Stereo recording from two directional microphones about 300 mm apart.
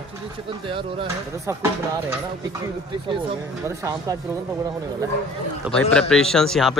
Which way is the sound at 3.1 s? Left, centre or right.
Centre.